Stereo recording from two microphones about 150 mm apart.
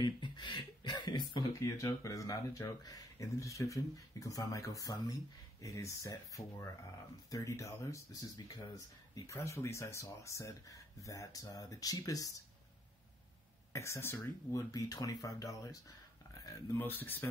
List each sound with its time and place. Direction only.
0.0 s speech: 30° left (ahead or behind)
13.7 s speech: 20° left (ahead or behind)